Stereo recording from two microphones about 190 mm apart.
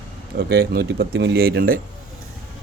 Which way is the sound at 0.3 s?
55° right (ahead or behind).